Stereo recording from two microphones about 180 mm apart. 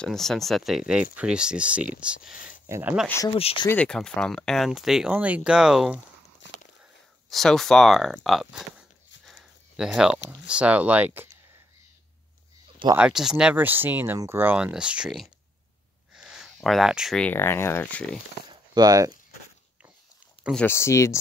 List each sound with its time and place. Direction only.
0.0 s speech: centre (ahead or behind)
2.3 s a sound: 45° left (ahead or behind)
2.7 s speech: 10° right (ahead or behind)
3.3 s speech: 30° left (ahead or behind)
3.6 s speech: 5° left (ahead or behind)
7.2 s speech: centre (ahead or behind)
9.2 s a sound: centre (ahead or behind)
10.4 s speech: 5° right (ahead or behind)
12.9 s speech: 5° right (ahead or behind)
18.5 s a sound: 20° right (ahead or behind)
20.5 s speech: 15° left (ahead or behind)